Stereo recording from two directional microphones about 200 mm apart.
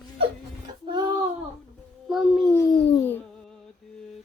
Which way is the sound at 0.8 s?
20° right (ahead or behind).